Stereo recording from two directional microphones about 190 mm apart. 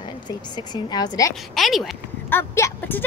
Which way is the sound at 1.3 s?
Centre (ahead or behind).